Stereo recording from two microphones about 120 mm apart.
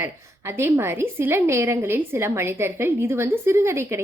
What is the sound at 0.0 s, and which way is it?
A woman's voice, 20° right (ahead or behind).